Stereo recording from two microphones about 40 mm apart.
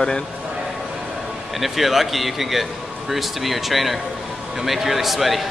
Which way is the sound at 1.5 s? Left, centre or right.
Centre.